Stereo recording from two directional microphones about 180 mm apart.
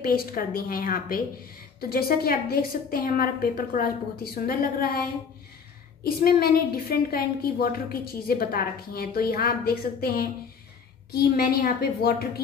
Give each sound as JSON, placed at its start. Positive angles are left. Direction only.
{"t": 0.0, "sound": "a woman's voice", "side_deg": 55}
{"t": 6.2, "sound": "a woman's voice", "side_deg": 60}